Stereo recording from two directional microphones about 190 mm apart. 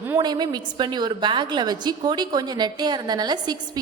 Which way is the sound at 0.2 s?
25° right (ahead or behind).